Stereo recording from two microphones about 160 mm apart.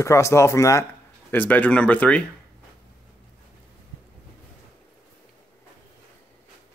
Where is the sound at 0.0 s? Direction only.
20° left (ahead or behind).